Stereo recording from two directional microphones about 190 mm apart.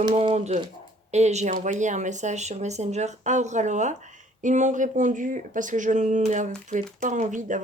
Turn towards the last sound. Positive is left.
turn(degrees=-40)  # may be behind; listen again after turning